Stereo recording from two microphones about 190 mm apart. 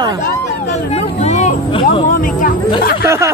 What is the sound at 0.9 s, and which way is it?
Speech, 35° left (ahead or behind).